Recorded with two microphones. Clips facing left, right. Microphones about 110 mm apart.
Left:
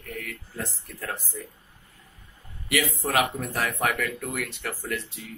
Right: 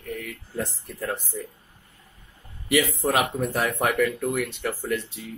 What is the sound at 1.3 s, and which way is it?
Speech, 30° right (ahead or behind).